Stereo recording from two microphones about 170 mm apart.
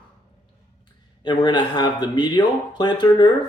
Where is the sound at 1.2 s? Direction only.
25° left (ahead or behind).